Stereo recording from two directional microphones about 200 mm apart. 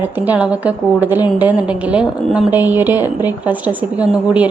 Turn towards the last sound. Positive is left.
turn(degrees=-5)  # may be behind; listen again after turning